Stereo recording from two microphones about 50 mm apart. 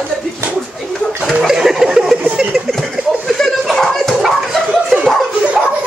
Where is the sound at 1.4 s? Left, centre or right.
Centre.